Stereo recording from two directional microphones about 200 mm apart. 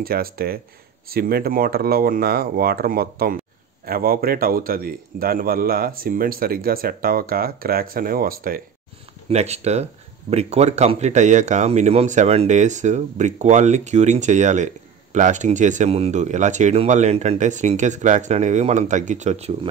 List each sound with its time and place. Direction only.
0.0 s a man's voice: 50° right (ahead or behind)
9.3 s speech: 35° right (ahead or behind)